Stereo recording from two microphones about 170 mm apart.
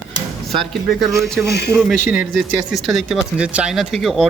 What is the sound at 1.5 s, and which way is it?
Speech, 70° left (ahead or behind).